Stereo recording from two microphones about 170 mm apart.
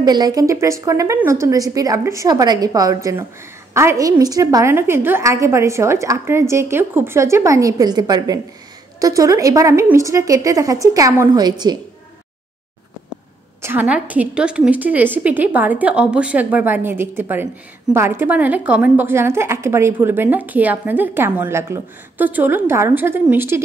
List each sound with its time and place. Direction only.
0.0 s a woman's voice: 25° right (ahead or behind)
13.6 s a woman's voice: 10° right (ahead or behind)